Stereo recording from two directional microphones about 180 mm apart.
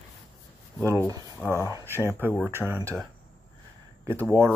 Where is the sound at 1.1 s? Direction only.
20° right (ahead or behind).